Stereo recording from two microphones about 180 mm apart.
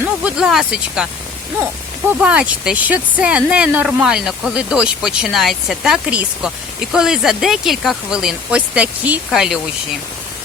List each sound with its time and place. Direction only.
0.0 s speech: 5° right (ahead or behind)
2.0 s speech: 5° right (ahead or behind)